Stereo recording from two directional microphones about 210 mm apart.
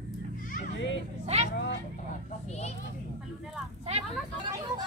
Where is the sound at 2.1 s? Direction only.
30° left (ahead or behind).